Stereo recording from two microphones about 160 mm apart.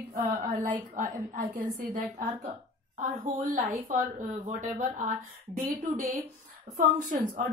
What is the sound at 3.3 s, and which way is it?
Speech, 65° right (ahead or behind).